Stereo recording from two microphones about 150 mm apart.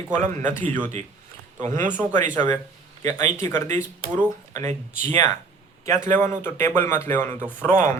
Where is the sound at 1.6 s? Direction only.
60° right (ahead or behind).